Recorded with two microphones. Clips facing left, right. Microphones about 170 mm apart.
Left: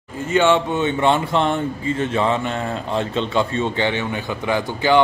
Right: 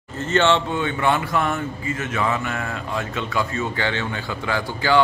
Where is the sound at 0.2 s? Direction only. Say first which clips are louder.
Left 2 dB; 10° left (ahead or behind).